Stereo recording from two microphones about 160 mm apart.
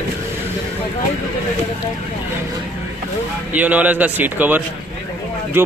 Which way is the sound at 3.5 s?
10° right (ahead or behind).